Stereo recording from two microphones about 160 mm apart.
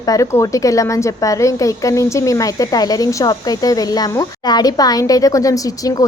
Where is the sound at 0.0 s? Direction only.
20° left (ahead or behind).